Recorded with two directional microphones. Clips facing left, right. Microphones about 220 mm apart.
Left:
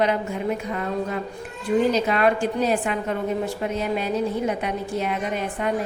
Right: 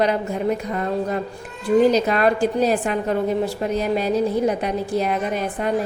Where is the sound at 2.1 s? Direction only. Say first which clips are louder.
Right 2 dB; 40° right (ahead or behind).